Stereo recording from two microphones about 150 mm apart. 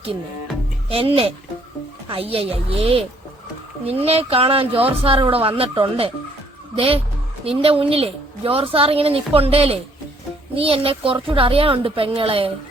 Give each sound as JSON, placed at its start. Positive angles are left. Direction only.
{"t": 0.9, "sound": "speech", "side_deg": -40}